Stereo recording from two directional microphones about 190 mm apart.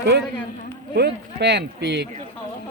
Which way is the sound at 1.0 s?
60° right (ahead or behind).